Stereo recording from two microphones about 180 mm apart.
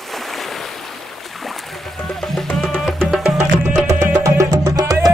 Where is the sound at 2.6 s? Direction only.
5° left (ahead or behind).